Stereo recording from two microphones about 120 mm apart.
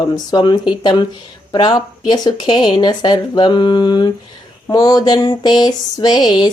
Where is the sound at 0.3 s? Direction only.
40° left (ahead or behind).